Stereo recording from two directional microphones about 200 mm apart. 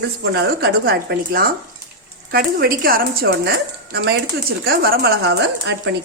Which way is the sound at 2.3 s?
50° right (ahead or behind).